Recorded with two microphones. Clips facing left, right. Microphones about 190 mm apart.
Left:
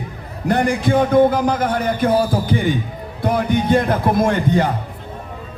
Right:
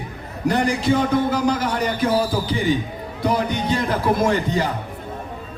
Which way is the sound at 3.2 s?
55° left (ahead or behind).